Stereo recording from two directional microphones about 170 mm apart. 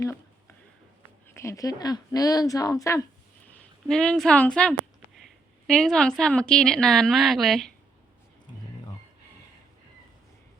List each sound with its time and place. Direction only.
1.3 s speech: 15° left (ahead or behind)
3.8 s a woman's voice: 5° left (ahead or behind)